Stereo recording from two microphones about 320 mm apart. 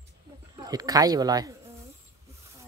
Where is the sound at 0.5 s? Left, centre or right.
Centre.